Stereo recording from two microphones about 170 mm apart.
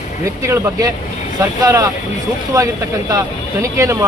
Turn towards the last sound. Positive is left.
turn(degrees=-15)  # may be behind; listen again after turning